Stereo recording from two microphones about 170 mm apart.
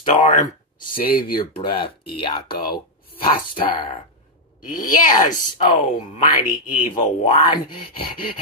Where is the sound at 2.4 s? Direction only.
60° left (ahead or behind).